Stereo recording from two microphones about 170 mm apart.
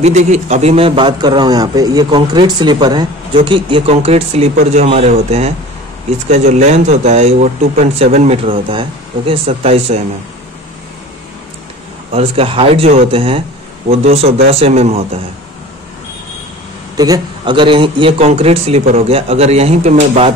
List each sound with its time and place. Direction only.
0.0 s a man's voice: 40° right (ahead or behind)
12.1 s speech: 35° right (ahead or behind)
16.9 s speech: 20° right (ahead or behind); by 20.3 s 35° right (ahead or behind)